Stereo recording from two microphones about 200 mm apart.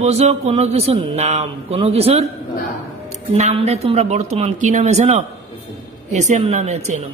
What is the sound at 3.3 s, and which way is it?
A man's voice, 30° right (ahead or behind).